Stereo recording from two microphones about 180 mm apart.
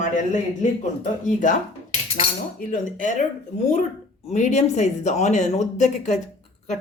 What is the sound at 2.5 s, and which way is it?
Speech, 45° left (ahead or behind).